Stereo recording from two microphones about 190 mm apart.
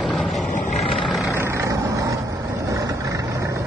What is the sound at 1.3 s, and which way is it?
Vehicle, 15° right (ahead or behind).